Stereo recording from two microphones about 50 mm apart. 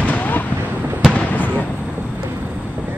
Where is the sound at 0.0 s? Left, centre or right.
Left.